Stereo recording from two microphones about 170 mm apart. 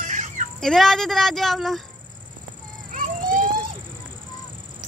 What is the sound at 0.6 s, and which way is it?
Speech, centre (ahead or behind).